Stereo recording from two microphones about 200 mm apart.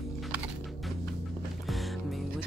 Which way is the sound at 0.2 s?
Centre (ahead or behind).